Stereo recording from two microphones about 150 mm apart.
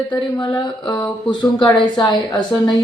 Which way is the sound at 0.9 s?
30° left (ahead or behind).